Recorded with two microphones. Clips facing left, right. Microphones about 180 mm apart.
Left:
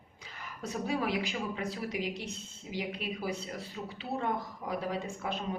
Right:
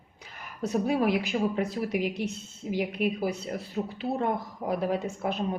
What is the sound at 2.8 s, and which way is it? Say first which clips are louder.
A woman's voice: right 8 dB; 55° right (ahead or behind).